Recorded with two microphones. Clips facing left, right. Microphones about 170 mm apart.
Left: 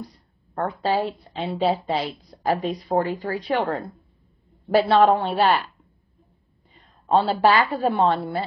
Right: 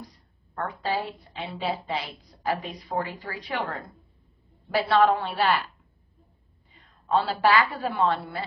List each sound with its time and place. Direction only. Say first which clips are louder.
0.0 s a woman's voice: left 7 dB; 35° left (ahead or behind)
7.1 s a woman's voice: left 4 dB; 30° left (ahead or behind)